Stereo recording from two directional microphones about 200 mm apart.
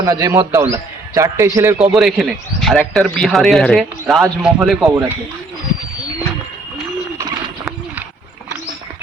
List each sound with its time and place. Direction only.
0.0 s a man's voice: 15° right (ahead or behind)
1.9 s speech: centre (ahead or behind)
7.2 s bird: 15° right (ahead or behind)